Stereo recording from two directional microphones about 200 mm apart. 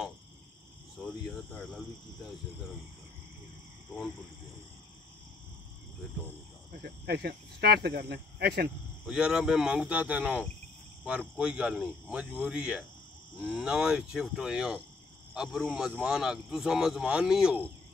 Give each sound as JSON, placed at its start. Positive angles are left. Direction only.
{"t": 1.2, "sound": "speech", "side_deg": 0}
{"t": 6.7, "sound": "speech", "side_deg": -55}
{"t": 9.0, "sound": "speech", "side_deg": -5}